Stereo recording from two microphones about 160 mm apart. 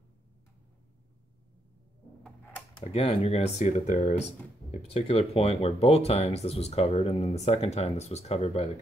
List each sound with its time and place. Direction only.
2.8 s speech: 40° left (ahead or behind)